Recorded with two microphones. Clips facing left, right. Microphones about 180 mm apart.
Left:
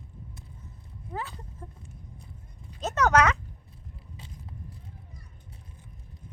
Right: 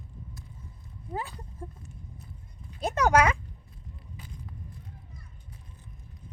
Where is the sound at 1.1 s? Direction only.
15° right (ahead or behind).